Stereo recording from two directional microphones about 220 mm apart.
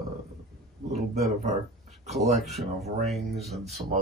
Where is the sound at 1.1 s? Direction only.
30° right (ahead or behind).